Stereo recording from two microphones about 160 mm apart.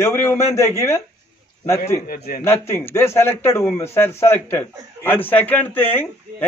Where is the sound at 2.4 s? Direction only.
15° left (ahead or behind).